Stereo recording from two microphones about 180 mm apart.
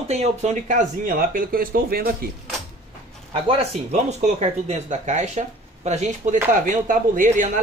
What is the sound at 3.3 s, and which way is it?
Speech, 30° right (ahead or behind).